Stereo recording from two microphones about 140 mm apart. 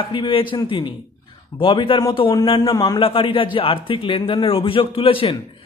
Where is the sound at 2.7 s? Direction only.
25° left (ahead or behind).